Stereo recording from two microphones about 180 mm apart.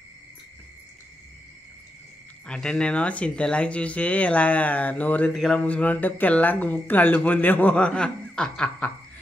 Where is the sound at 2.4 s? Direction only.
5° left (ahead or behind).